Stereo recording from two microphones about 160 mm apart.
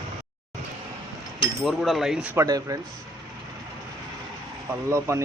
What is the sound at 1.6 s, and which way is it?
Speech, centre (ahead or behind).